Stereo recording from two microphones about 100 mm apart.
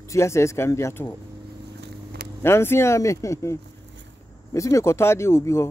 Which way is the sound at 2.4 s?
25° left (ahead or behind).